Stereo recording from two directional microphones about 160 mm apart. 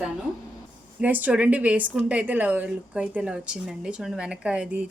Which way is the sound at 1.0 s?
10° right (ahead or behind).